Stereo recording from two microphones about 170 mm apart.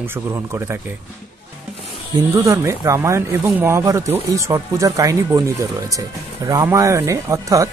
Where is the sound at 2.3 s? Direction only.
20° right (ahead or behind).